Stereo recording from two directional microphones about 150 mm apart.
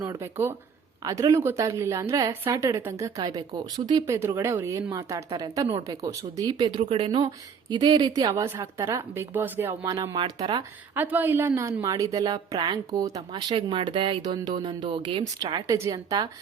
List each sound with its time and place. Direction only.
0.0 s a woman's voice: 25° right (ahead or behind)
9.8 s a woman's voice: 25° right (ahead or behind)
10.9 s a woman's voice: 10° right (ahead or behind)
13.5 s a woman's voice: 35° right (ahead or behind)